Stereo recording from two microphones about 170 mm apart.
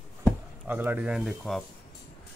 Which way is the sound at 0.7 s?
10° right (ahead or behind).